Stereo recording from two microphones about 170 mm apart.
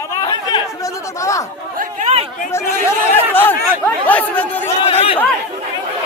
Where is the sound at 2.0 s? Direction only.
40° right (ahead or behind).